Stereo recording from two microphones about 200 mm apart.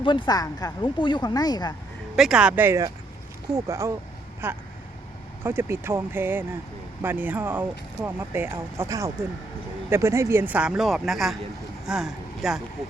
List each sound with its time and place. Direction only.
0.0 s speech: 25° left (ahead or behind)
2.1 s speech: 5° right (ahead or behind)